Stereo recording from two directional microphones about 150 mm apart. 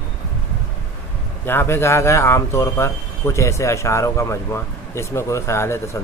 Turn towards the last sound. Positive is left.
turn(degrees=15)  # may be behind; listen again after turning